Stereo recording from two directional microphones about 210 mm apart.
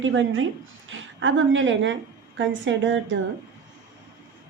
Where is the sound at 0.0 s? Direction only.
70° right (ahead or behind).